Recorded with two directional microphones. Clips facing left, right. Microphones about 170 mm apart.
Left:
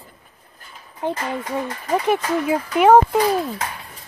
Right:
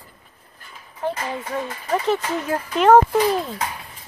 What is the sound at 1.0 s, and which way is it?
Speech, 20° left (ahead or behind).